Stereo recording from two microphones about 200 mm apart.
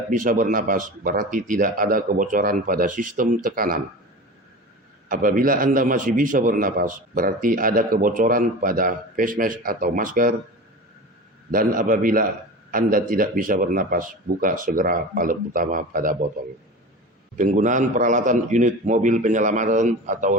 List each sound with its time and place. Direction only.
0.2 s a man's voice: 40° right (ahead or behind)
5.0 s a man's voice: 45° right (ahead or behind)
11.5 s a man's voice: 45° right (ahead or behind)
17.3 s a man's voice: 35° right (ahead or behind)